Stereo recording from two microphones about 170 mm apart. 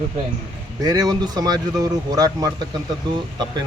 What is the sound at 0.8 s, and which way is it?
Speech, 20° right (ahead or behind).